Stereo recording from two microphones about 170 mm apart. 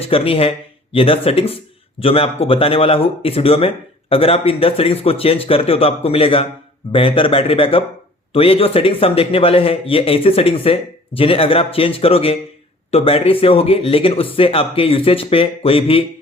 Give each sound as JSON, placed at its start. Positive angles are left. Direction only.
{"t": 0.0, "sound": "a man's voice", "side_deg": 35}